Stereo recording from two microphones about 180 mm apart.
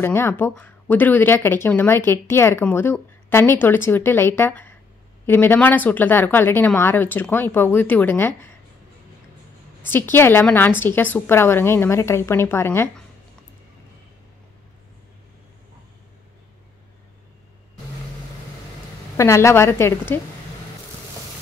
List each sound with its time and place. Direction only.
0.0 s speech: 15° left (ahead or behind)
9.8 s speech: 10° left (ahead or behind)
19.1 s speech: 15° left (ahead or behind)